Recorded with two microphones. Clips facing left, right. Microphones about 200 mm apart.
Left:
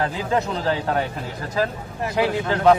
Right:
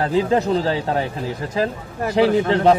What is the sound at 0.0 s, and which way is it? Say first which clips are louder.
A man's voice: right 5 dB; 30° right (ahead or behind).